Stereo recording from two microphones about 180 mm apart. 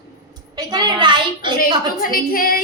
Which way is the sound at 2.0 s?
50° left (ahead or behind).